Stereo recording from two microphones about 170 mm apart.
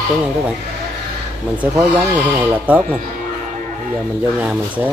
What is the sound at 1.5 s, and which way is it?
Speech, 10° right (ahead or behind).